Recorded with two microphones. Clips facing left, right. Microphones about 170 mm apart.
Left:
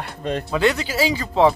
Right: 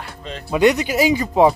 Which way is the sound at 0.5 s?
15° right (ahead or behind).